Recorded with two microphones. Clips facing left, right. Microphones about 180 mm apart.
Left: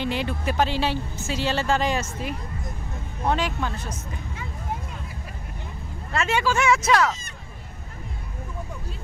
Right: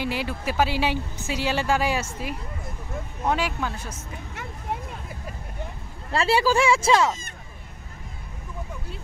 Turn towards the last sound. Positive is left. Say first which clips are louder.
# right 1 dB
turn(degrees=-25)  # may be behind; listen again after turning